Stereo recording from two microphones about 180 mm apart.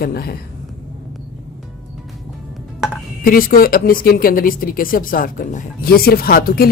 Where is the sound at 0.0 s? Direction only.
60° left (ahead or behind).